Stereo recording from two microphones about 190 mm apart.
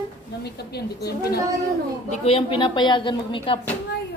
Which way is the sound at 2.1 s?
30° left (ahead or behind).